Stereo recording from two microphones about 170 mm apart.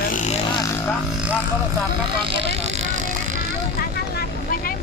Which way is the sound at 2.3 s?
35° right (ahead or behind).